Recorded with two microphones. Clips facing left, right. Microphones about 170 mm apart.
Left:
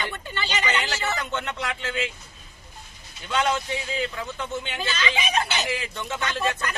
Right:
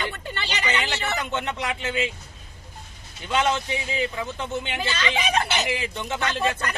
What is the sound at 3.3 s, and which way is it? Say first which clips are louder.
A man's voice: right 1 dB; 15° right (ahead or behind).